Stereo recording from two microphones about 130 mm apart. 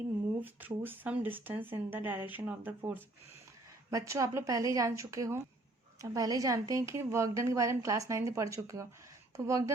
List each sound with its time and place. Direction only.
0.3 s speech: 15° right (ahead or behind)
3.8 s a woman's voice: 25° right (ahead or behind)